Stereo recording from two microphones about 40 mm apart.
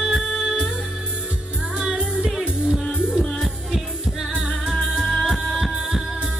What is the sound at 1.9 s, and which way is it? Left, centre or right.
Music, centre.